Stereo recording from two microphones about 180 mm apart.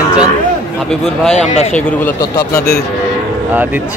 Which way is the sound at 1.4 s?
40° left (ahead or behind).